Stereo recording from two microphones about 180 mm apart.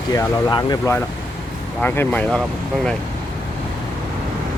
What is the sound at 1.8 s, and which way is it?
Speech, 10° left (ahead or behind).